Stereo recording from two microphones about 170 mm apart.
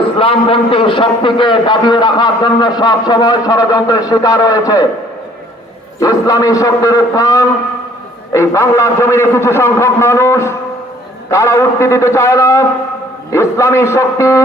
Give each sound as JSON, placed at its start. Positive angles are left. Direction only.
{"t": 0.2, "sound": "a man's voice", "side_deg": 35}
{"t": 6.0, "sound": "a man's voice", "side_deg": 20}